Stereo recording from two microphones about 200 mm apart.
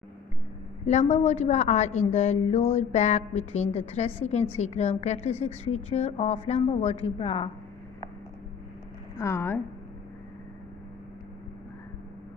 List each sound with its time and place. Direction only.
0.8 s a woman's voice: 35° left (ahead or behind)
9.2 s a woman's voice: 10° left (ahead or behind)